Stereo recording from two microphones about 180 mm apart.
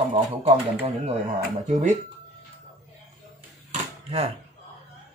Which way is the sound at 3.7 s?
35° right (ahead or behind).